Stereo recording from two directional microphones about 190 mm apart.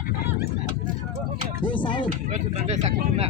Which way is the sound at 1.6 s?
25° left (ahead or behind).